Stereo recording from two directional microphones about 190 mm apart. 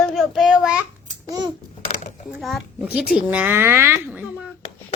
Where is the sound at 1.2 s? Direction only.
20° right (ahead or behind).